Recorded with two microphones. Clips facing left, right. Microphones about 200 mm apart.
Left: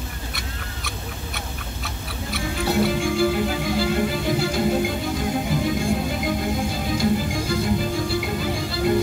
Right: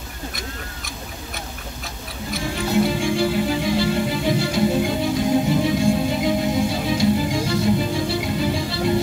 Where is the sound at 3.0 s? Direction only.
55° left (ahead or behind).